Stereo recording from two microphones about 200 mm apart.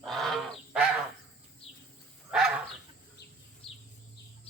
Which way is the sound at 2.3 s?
5° right (ahead or behind).